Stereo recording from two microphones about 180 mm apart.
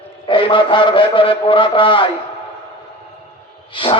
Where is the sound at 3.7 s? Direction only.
30° left (ahead or behind).